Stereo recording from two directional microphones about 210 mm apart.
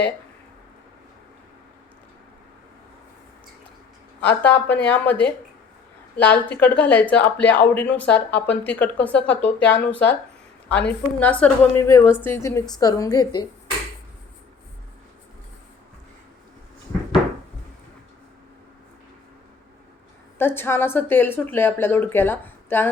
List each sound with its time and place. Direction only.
4.4 s speech: 5° left (ahead or behind)
20.4 s speech: 10° left (ahead or behind)